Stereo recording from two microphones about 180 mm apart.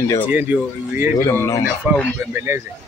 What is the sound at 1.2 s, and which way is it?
Speech, 15° left (ahead or behind).